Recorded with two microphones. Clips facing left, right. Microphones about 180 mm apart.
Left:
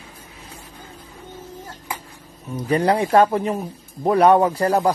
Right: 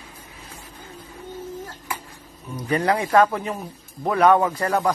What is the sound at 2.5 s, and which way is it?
Speech, 30° left (ahead or behind).